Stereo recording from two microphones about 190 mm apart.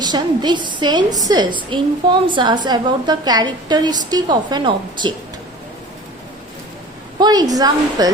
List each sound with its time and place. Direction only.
0.0 s a woman's voice: 20° right (ahead or behind)
7.2 s a woman's voice: 20° right (ahead or behind)